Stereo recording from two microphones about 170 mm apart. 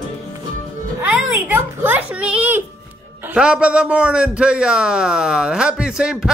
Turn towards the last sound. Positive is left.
turn(degrees=-5)  # may be behind; listen again after turning